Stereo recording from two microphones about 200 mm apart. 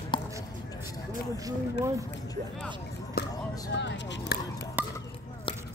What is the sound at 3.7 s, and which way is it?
Speech, 60° left (ahead or behind).